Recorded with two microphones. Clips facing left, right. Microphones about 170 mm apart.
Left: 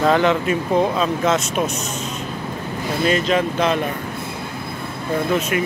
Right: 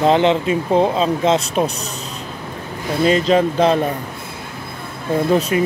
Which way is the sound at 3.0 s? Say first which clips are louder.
Right 4 dB; 30° right (ahead or behind).